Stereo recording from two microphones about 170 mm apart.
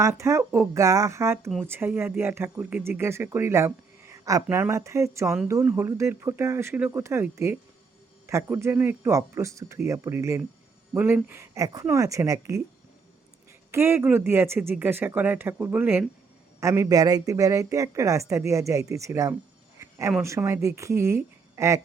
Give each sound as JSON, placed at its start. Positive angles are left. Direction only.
{"t": 0.0, "sound": "speech", "side_deg": -15}
{"t": 13.7, "sound": "speech", "side_deg": -10}
{"t": 19.8, "sound": "a sound", "side_deg": -15}
{"t": 20.2, "sound": "speech", "side_deg": -15}